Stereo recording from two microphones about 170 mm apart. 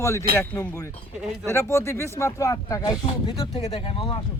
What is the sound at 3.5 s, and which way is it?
Speech, 35° left (ahead or behind).